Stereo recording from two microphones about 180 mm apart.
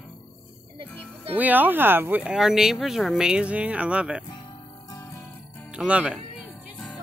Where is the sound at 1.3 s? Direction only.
10° right (ahead or behind).